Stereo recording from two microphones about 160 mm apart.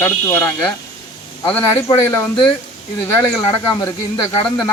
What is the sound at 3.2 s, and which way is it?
Speech, 30° left (ahead or behind).